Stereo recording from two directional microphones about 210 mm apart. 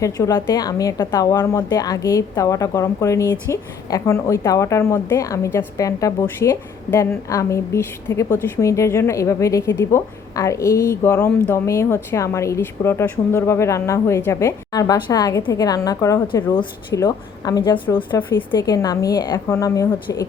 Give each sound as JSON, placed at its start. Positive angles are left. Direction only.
{"t": 0.0, "sound": "a woman's voice", "side_deg": 15}